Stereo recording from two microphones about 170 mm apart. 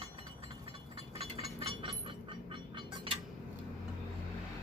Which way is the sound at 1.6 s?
30° right (ahead or behind).